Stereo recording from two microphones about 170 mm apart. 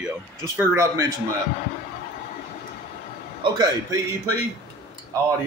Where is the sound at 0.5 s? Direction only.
15° right (ahead or behind).